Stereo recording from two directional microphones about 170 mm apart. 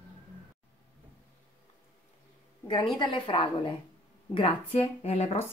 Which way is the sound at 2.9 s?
30° left (ahead or behind).